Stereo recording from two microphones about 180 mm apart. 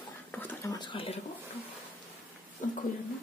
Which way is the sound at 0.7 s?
30° left (ahead or behind).